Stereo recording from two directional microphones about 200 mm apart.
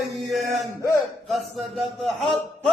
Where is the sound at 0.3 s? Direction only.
Centre (ahead or behind).